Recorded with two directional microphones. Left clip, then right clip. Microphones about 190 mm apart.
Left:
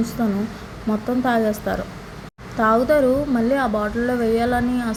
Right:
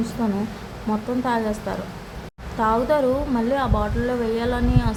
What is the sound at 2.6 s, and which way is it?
A woman's voice, 15° left (ahead or behind).